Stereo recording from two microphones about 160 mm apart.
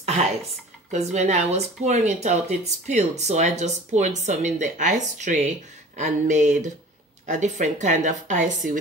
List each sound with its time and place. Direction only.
0.9 s speech: 45° right (ahead or behind)